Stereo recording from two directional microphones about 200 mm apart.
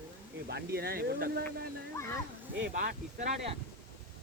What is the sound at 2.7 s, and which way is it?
Speech, 40° right (ahead or behind).